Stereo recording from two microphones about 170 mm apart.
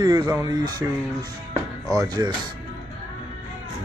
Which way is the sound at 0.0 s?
25° right (ahead or behind).